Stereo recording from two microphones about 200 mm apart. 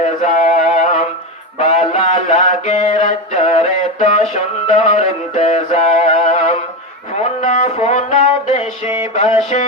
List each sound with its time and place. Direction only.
0.0 s music: 35° left (ahead or behind)
1.5 s mantra: 30° left (ahead or behind)
4.7 s music: 35° left (ahead or behind)
7.2 s a sound: 35° left (ahead or behind)